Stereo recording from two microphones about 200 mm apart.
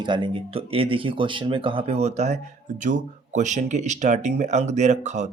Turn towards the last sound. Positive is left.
turn(degrees=-35)  # may be behind; listen again after turning